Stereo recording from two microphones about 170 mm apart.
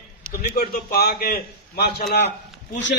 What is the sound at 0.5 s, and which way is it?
A man's voice, 65° left (ahead or behind).